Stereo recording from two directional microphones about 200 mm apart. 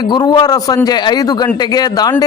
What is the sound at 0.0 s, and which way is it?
A man's voice, 20° left (ahead or behind).